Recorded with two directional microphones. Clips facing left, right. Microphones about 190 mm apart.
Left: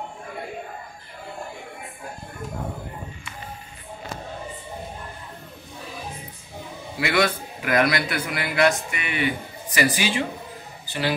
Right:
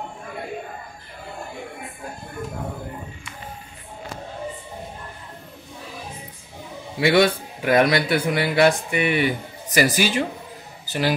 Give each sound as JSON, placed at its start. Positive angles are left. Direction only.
{"t": 7.0, "sound": "a man's voice", "side_deg": -30}